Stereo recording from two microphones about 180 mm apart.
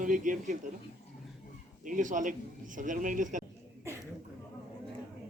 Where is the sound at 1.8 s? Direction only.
45° right (ahead or behind).